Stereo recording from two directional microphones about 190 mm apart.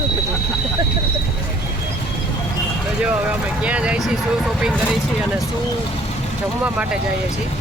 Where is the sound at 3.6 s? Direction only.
5° right (ahead or behind).